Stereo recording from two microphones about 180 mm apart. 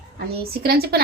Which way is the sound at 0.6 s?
60° right (ahead or behind).